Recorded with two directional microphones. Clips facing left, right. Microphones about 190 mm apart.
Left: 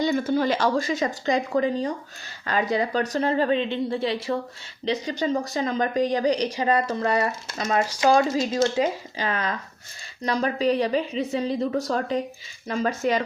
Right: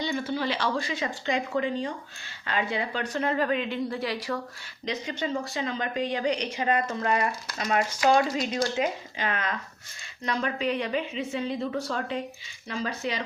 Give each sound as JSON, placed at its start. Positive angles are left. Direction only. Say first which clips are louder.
{"t": 0.0, "sound": "speech", "louder": "left 7 dB", "side_deg": 45}
{"t": 4.9, "sound": "a woman's voice", "louder": "left 6 dB", "side_deg": 35}
{"t": 7.3, "sound": "a woman's voice", "louder": "left 2 dB", "side_deg": 25}